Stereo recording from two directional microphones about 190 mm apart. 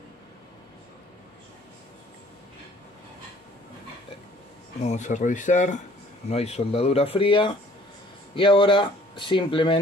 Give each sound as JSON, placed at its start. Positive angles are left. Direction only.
{"t": 4.8, "sound": "speech", "side_deg": 40}